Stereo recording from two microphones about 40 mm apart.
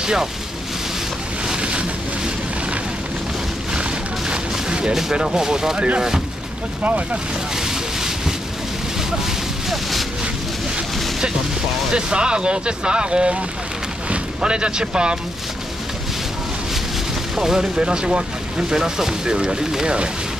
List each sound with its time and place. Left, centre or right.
0.0 s speech: centre
1.6 s boat: right
4.3 s a sound: right
5.1 s speech: centre
6.8 s speech: right
7.5 s vehicle: centre
9.2 s a sound: centre
11.9 s speech: right
17.4 s speech: centre